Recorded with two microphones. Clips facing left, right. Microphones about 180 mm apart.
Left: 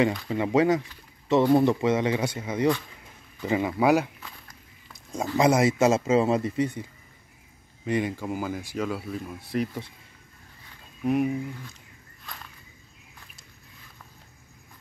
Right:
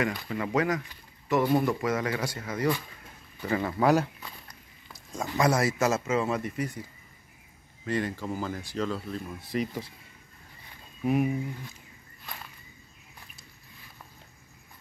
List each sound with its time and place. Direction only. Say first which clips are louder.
0.0 s speech: left 5 dB; 25° left (ahead or behind); by 4.1 s 10° left (ahead or behind)
4.2 s walk: even; centre (ahead or behind)
5.1 s speech: left 4 dB; 20° left (ahead or behind)
7.8 s speech: left 3 dB; 15° left (ahead or behind)
11.1 s speech: left 2 dB; centre (ahead or behind)